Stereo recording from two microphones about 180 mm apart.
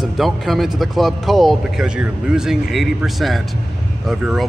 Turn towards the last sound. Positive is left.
turn(degrees=0)  # may be behind; listen again after turning